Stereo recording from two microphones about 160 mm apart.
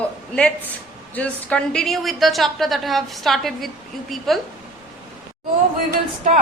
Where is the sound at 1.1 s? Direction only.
5° left (ahead or behind).